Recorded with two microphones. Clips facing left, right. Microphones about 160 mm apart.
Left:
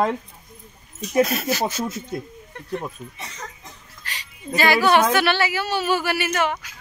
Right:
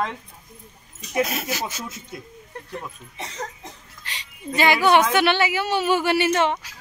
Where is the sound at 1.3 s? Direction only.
15° right (ahead or behind).